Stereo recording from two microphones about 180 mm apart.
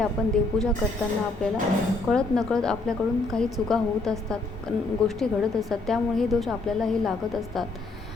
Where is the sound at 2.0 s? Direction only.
5° left (ahead or behind).